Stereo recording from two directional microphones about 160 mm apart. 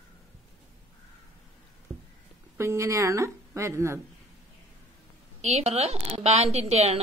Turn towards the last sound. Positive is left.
turn(degrees=-40)  # may be behind; listen again after turning